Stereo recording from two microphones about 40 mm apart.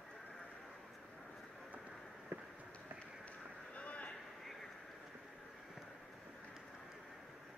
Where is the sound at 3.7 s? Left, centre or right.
Left.